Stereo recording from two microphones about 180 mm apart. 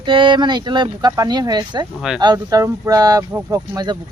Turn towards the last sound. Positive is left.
turn(degrees=-20)  # may be behind; listen again after turning